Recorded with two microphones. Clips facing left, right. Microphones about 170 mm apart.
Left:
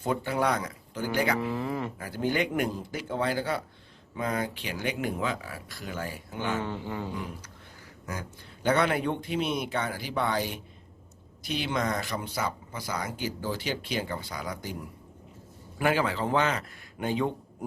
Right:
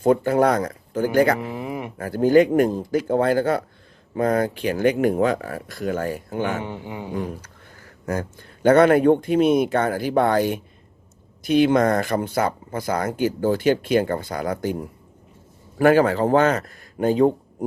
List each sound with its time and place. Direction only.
0.0 s speech: 50° right (ahead or behind)
1.4 s speech: 15° right (ahead or behind)
2.0 s speech: 50° right (ahead or behind)
6.6 s speech: 15° right (ahead or behind)
8.0 s speech: 50° right (ahead or behind)